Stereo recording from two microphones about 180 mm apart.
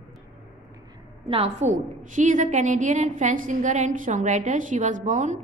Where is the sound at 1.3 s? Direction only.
35° right (ahead or behind).